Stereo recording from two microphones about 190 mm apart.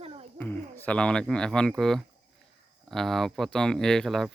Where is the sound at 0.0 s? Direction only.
30° right (ahead or behind).